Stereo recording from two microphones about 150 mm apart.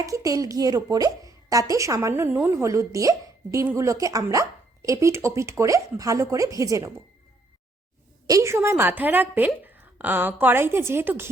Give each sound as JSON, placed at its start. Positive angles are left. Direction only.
{"t": 0.0, "sound": "speech", "side_deg": -20}
{"t": 8.3, "sound": "a woman's voice", "side_deg": -20}